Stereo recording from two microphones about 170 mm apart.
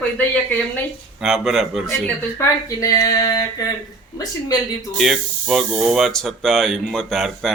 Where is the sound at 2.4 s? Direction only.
20° left (ahead or behind).